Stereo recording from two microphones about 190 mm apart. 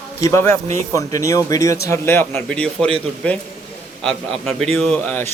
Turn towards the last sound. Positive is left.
turn(degrees=5)  # may be behind; listen again after turning